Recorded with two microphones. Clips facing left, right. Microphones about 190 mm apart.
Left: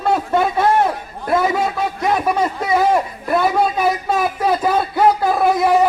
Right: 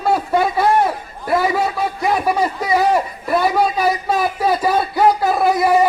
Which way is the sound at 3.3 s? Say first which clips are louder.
Even; centre (ahead or behind).